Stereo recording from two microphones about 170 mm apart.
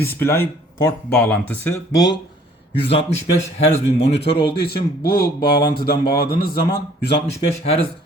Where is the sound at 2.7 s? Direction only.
35° left (ahead or behind).